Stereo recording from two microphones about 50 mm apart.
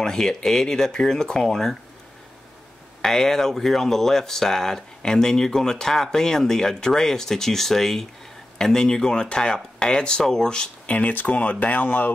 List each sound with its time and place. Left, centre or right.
0.0 s speech: centre
3.0 s speech: centre
10.9 s speech: left